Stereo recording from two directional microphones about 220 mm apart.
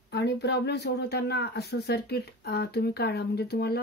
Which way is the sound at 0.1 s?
50° left (ahead or behind).